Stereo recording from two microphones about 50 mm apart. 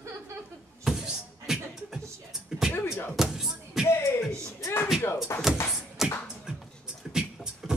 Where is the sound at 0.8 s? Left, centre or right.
Centre.